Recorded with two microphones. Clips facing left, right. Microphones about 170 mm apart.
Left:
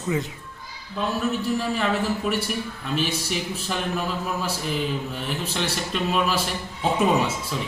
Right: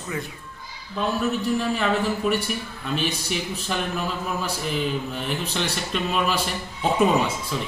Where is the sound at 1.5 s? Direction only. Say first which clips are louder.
Right 1 dB; centre (ahead or behind).